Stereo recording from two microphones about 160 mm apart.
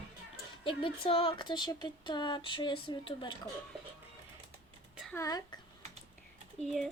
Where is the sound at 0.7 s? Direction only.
35° left (ahead or behind).